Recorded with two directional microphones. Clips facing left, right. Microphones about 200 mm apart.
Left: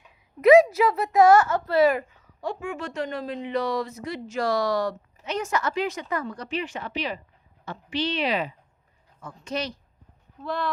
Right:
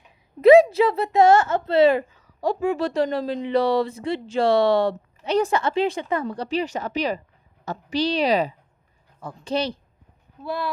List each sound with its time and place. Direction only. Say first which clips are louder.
0.4 s a child's voice: right 3 dB; 30° right (ahead or behind)
10.4 s speech: right 1 dB; 10° right (ahead or behind)